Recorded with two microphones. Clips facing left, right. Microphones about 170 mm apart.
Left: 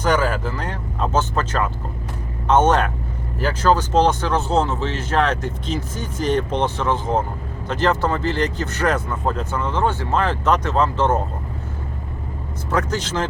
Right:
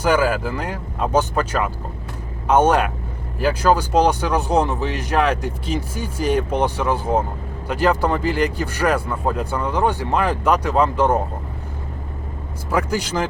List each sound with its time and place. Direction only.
0.0 s speech: 10° right (ahead or behind)
12.7 s speech: 10° right (ahead or behind)